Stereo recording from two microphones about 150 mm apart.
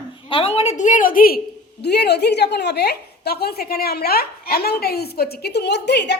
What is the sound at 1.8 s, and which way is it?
A woman's voice, 90° left.